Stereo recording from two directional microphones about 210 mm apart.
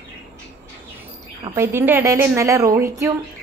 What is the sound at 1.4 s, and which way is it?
A woman's voice, 15° right (ahead or behind).